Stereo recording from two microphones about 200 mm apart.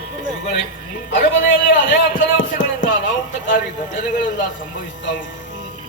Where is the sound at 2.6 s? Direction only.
70° left (ahead or behind).